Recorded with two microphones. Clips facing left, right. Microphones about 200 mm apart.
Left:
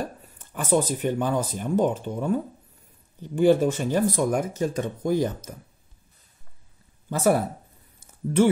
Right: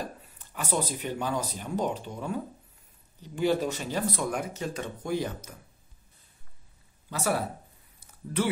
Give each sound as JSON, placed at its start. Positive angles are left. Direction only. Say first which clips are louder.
{"t": 0.2, "sound": "speech", "louder": "left 5 dB", "side_deg": 50}
{"t": 7.1, "sound": "speech", "louder": "left 8 dB", "side_deg": 50}